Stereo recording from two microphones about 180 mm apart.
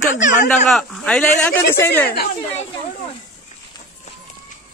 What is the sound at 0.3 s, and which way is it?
Speech, 45° left (ahead or behind).